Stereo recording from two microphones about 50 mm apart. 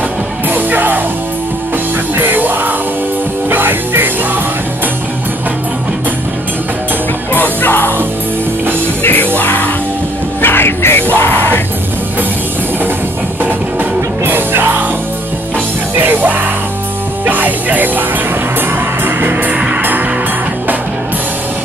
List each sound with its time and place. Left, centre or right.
0.5 s music: right
2.1 s music: right
7.3 s music: left
9.0 s music: left
11.1 s music: left
14.2 s music: right
16.0 s music: right
19.0 s music: right